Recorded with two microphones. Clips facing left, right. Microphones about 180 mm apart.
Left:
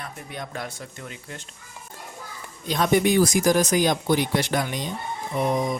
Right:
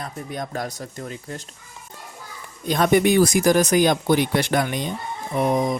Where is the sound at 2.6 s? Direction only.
55° right (ahead or behind).